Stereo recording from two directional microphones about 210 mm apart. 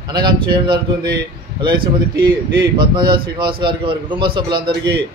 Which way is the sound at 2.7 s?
20° right (ahead or behind).